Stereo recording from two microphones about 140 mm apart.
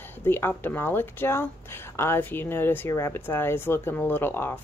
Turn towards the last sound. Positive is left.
turn(degrees=15)  # may be behind; listen again after turning